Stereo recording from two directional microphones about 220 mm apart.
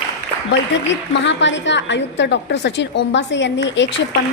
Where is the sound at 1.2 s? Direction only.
55° left (ahead or behind).